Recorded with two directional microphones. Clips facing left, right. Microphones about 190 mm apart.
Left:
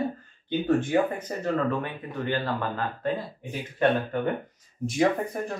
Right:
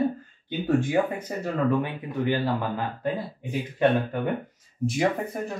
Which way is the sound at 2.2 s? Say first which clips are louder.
Right 3 dB; 15° right (ahead or behind).